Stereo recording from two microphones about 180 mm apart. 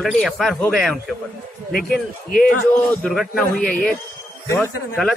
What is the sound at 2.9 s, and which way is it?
A man's voice, centre (ahead or behind).